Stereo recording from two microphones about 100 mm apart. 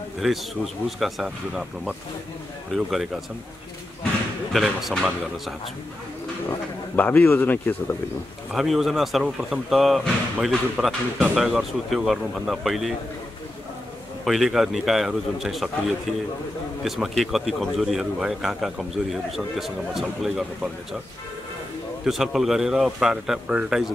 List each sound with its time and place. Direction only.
0.2 s a man's voice: centre (ahead or behind)
4.5 s a man's voice: centre (ahead or behind)
7.0 s a man's voice: 20° left (ahead or behind)
8.5 s a man's voice: centre (ahead or behind)
14.2 s a man's voice: centre (ahead or behind)
16.8 s a man's voice: centre (ahead or behind)
22.0 s a man's voice: 5° right (ahead or behind)